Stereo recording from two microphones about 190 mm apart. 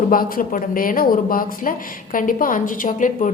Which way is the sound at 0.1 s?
50° left (ahead or behind).